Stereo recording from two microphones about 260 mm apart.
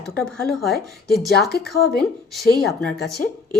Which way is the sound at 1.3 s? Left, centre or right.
Left.